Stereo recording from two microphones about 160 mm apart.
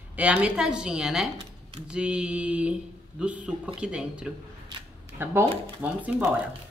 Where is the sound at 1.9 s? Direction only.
5° right (ahead or behind).